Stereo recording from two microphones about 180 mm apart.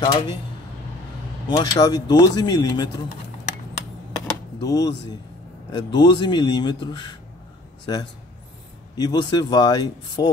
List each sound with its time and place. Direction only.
0.0 s speech: 25° left (ahead or behind)
1.6 s speech: 20° left (ahead or behind)
4.6 s speech: 20° left (ahead or behind)